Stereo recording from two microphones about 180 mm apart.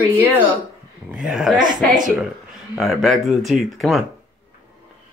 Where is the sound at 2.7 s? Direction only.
Centre (ahead or behind).